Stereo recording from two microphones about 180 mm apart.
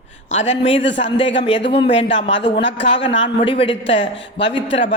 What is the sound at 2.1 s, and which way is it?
Speech, 90° left.